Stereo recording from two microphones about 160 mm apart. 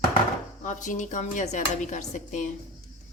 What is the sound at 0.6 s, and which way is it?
Speech, 50° left (ahead or behind).